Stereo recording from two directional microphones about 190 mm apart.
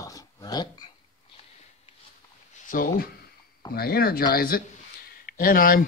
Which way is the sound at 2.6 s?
50° left (ahead or behind).